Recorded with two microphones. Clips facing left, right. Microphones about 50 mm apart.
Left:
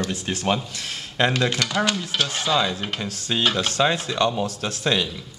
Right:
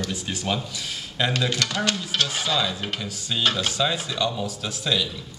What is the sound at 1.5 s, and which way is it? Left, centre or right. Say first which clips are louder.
Speech: left 2 dB; centre.